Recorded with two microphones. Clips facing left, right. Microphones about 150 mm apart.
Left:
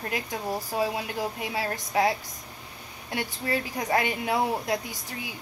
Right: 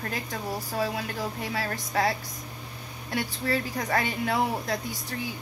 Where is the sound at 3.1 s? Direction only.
20° left (ahead or behind).